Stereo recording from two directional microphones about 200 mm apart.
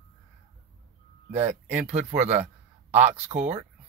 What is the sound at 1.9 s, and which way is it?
Speech, 35° right (ahead or behind).